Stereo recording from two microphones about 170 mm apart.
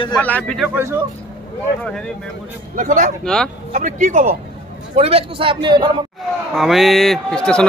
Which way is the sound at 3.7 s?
45° right (ahead or behind).